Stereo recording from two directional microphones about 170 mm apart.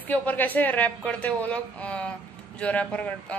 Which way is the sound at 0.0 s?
10° left (ahead or behind).